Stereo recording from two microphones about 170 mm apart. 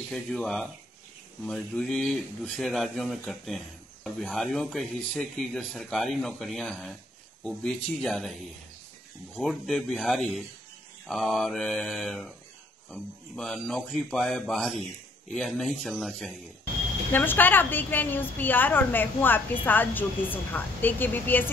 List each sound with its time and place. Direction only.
0.1 s speech: centre (ahead or behind)
17.1 s a woman's voice: 10° left (ahead or behind)